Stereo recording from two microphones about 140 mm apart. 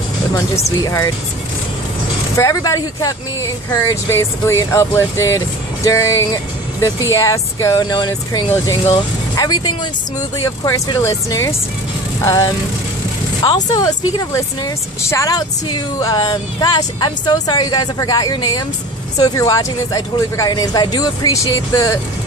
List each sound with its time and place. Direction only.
0.3 s speech: 25° left (ahead or behind)
2.3 s speech: 20° left (ahead or behind)
13.7 s speech: 25° left (ahead or behind)